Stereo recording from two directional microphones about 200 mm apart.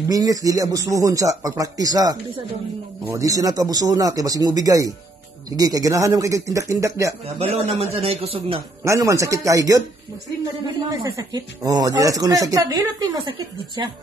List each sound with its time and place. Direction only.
0.1 s speech: 15° right (ahead or behind)
7.3 s a man's voice: 30° right (ahead or behind)
8.8 s speech: 15° right (ahead or behind)